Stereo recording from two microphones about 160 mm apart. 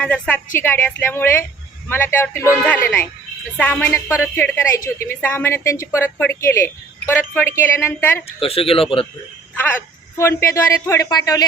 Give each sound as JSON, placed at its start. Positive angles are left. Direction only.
{"t": 0.0, "sound": "a woman's voice", "side_deg": 10}
{"t": 8.4, "sound": "speech", "side_deg": 35}
{"t": 10.2, "sound": "speech", "side_deg": 15}